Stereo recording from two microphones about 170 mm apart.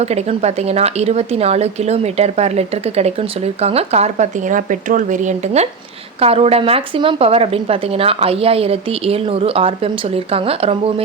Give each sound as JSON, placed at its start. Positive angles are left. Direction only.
{"t": 0.0, "sound": "speech", "side_deg": -40}